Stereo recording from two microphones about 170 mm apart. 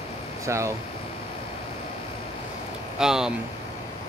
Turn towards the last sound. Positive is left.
turn(degrees=-5)  # may be behind; listen again after turning